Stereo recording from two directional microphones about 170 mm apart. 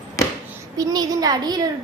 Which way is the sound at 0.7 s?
20° right (ahead or behind).